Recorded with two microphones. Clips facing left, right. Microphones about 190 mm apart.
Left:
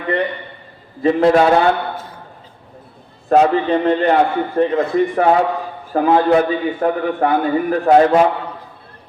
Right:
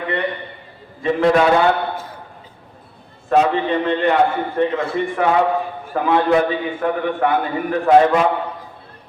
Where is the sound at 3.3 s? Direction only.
40° left (ahead or behind).